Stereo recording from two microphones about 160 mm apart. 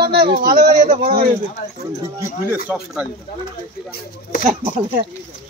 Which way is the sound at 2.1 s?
15° right (ahead or behind).